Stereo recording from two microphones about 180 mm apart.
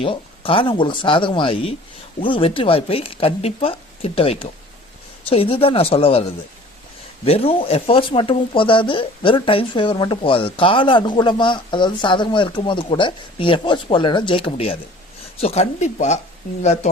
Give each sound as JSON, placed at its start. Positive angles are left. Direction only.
{"t": 0.0, "sound": "speech", "side_deg": 30}
{"t": 7.3, "sound": "speech", "side_deg": 30}